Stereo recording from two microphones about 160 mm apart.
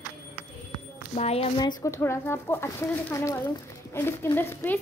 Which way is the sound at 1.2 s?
40° left (ahead or behind).